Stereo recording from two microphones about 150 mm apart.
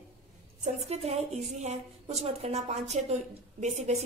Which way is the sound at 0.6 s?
45° right (ahead or behind).